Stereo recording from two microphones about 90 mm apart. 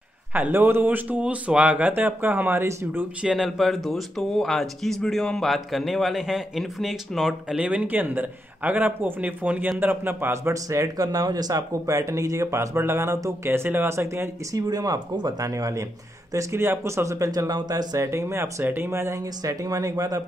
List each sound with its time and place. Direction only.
0.3 s speech: 20° right (ahead or behind)
3.2 s speech: 10° right (ahead or behind)
3.4 s a man's voice: centre (ahead or behind)
7.5 s speech: 15° right (ahead or behind); by 14.6 s 30° right (ahead or behind)
14.7 s speech: 45° right (ahead or behind)